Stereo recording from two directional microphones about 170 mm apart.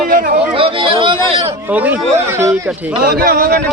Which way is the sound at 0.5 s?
30° right (ahead or behind).